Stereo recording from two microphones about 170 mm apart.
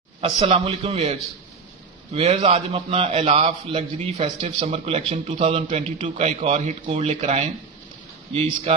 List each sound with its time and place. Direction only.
0.2 s a man's voice: 30° right (ahead or behind)
2.1 s a man's voice: 35° right (ahead or behind)